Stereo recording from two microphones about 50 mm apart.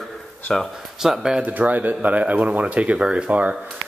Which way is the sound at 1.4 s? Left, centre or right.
Right.